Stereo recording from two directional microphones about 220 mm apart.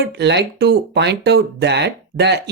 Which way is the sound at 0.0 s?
50° right (ahead or behind).